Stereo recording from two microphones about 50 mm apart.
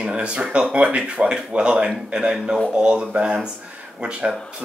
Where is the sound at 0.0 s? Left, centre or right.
Centre.